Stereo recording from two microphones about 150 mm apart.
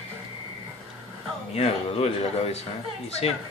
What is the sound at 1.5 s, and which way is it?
Speech, 45° left (ahead or behind).